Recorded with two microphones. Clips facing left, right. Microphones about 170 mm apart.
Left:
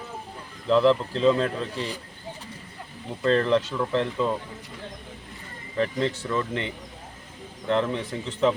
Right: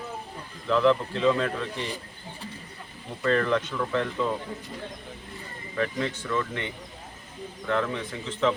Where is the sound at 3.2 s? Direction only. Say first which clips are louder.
Left 3 dB; 30° left (ahead or behind).